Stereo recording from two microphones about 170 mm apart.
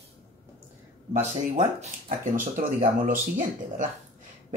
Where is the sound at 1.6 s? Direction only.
45° right (ahead or behind).